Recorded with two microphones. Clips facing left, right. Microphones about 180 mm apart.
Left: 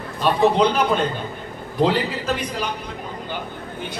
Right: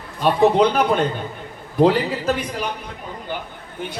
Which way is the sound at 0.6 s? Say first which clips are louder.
Right 2 dB; 55° right (ahead or behind).